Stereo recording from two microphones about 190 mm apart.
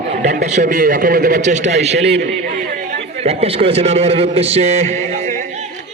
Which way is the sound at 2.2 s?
50° right (ahead or behind).